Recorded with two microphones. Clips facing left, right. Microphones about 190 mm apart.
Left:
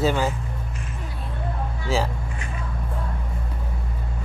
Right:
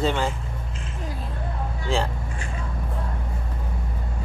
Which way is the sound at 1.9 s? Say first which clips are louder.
Left 1 dB; 5° left (ahead or behind).